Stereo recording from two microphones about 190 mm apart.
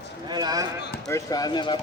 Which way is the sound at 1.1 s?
20° left (ahead or behind).